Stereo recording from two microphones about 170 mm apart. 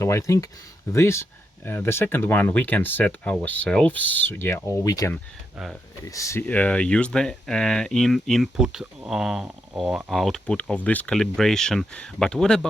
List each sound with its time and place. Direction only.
0.0 s speech: 15° left (ahead or behind)